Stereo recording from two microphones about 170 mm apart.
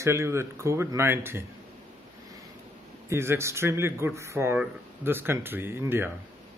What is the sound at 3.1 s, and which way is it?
Speech, 15° right (ahead or behind).